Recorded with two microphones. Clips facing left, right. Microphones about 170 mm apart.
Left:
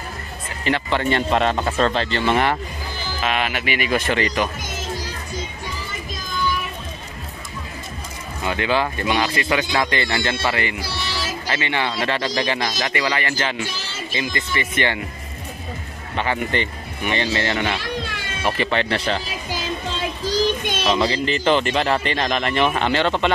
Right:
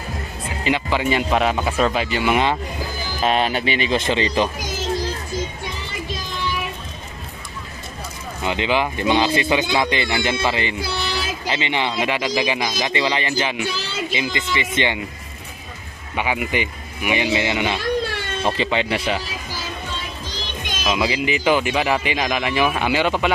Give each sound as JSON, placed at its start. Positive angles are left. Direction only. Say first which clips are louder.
{"t": 0.7, "sound": "speech", "louder": "even", "side_deg": -10}
{"t": 3.2, "sound": "speech", "louder": "right 4 dB", "side_deg": -35}
{"t": 8.4, "sound": "speech", "louder": "even", "side_deg": -20}
{"t": 16.2, "sound": "speech", "louder": "even", "side_deg": -10}
{"t": 20.2, "sound": "a sound", "louder": "left 11 dB", "side_deg": 40}
{"t": 20.8, "sound": "speech", "louder": "even", "side_deg": -10}